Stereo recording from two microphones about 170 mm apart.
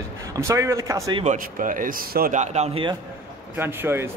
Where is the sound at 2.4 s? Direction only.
40° right (ahead or behind).